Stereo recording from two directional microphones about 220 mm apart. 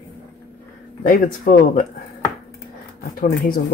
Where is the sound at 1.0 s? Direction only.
35° left (ahead or behind).